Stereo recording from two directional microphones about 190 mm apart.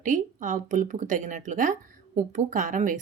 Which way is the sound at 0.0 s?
40° right (ahead or behind).